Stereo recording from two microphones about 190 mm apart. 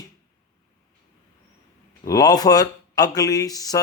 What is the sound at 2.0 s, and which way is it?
Speech, 20° left (ahead or behind).